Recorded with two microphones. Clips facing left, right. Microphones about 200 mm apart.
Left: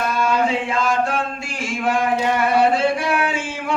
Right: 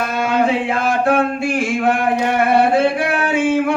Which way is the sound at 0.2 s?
60° right (ahead or behind).